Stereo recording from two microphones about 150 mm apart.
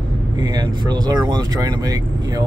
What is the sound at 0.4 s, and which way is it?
Speech, 30° right (ahead or behind).